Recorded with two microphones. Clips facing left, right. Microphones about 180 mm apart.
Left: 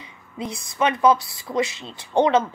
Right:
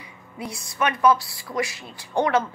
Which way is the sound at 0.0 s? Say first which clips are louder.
Left 3 dB; 20° left (ahead or behind).